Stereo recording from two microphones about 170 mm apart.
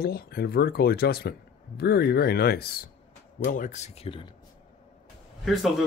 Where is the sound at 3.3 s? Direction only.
50° left (ahead or behind); by 4.3 s 35° left (ahead or behind).